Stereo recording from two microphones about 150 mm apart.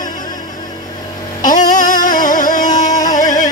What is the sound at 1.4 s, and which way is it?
Music, 60° left (ahead or behind).